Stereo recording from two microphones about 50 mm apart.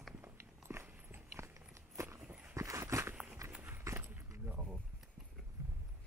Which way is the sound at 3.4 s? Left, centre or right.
Right.